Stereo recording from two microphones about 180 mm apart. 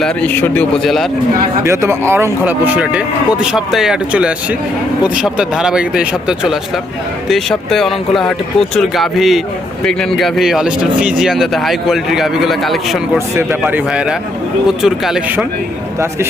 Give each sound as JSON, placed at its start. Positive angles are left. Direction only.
{"t": 0.0, "sound": "speech", "side_deg": 10}
{"t": 1.6, "sound": "speech", "side_deg": -15}
{"t": 13.1, "sound": "speech", "side_deg": -15}